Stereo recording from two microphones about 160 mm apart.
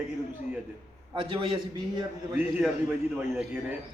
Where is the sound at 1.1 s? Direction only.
35° right (ahead or behind).